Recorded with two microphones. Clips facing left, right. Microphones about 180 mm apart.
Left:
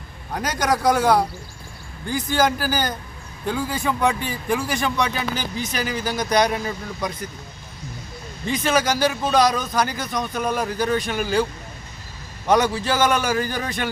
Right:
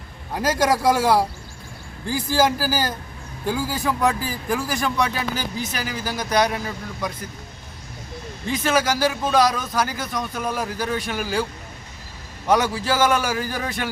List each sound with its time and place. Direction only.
0.3 s a man's voice: 5° right (ahead or behind)
8.4 s a man's voice: 5° right (ahead or behind)
12.5 s a man's voice: 5° right (ahead or behind)